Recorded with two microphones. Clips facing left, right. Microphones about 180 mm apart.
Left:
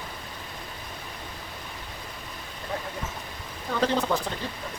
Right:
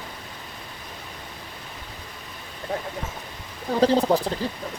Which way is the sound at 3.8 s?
35° right (ahead or behind).